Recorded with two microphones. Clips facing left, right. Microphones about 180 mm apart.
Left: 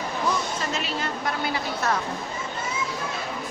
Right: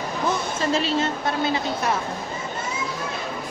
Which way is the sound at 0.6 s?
30° right (ahead or behind).